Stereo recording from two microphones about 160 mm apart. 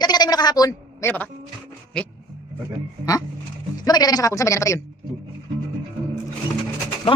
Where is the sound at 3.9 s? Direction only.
25° left (ahead or behind).